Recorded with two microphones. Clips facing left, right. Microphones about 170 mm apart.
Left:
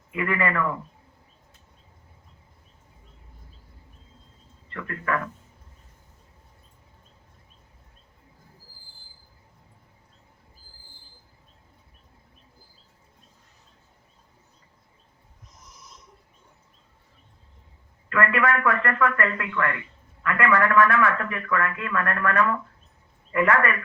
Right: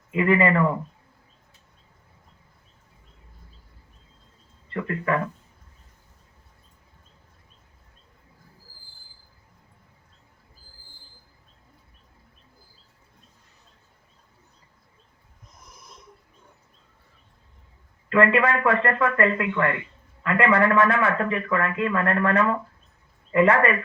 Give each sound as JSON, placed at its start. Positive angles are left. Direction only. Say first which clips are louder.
{"t": 0.1, "sound": "a man's voice", "louder": "right 6 dB", "side_deg": -25}
{"t": 4.7, "sound": "a man's voice", "louder": "right 4 dB", "side_deg": -25}
{"t": 15.6, "sound": "snoring", "louder": "right 1 dB", "side_deg": -55}
{"t": 18.1, "sound": "a man's voice", "louder": "right 4 dB", "side_deg": -25}